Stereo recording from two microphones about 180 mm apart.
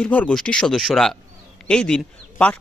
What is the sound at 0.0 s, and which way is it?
Speech, 5° left (ahead or behind).